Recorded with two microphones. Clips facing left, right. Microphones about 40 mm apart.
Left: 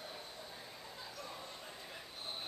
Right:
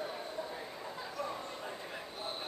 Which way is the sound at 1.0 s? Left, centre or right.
Right.